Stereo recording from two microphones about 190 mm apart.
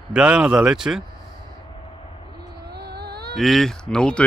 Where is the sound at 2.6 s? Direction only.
60° right (ahead or behind).